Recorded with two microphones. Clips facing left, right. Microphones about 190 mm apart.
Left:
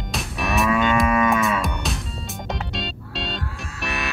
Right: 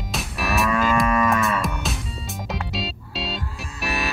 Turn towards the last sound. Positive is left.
turn(degrees=0)  # may be behind; listen again after turning